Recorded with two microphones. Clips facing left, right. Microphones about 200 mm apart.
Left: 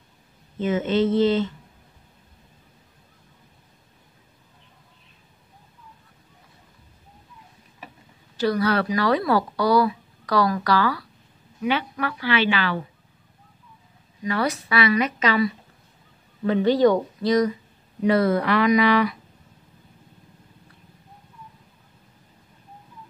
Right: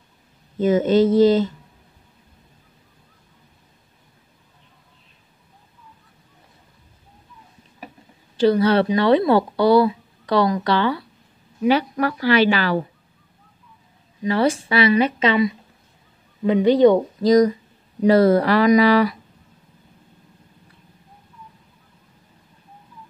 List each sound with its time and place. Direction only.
0.6 s a woman's voice: 40° right (ahead or behind)
8.4 s speech: 30° right (ahead or behind)
11.6 s a woman's voice: 40° right (ahead or behind)
14.2 s a woman's voice: 30° right (ahead or behind)
17.2 s a woman's voice: 35° right (ahead or behind)